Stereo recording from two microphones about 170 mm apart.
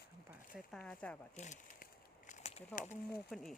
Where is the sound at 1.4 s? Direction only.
45° left (ahead or behind).